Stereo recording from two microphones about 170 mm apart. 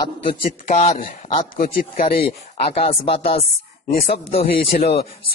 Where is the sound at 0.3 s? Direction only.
55° left (ahead or behind).